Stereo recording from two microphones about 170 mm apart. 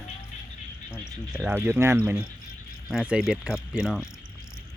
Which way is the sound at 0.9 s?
10° right (ahead or behind).